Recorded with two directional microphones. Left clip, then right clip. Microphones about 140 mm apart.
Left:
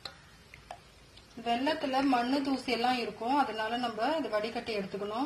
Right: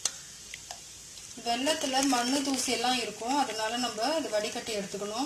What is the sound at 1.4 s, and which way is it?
Speech, centre (ahead or behind).